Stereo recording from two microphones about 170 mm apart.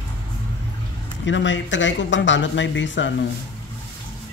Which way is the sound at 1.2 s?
90° left.